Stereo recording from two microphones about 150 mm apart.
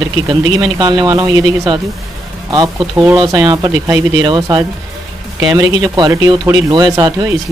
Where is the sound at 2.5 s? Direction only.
25° right (ahead or behind).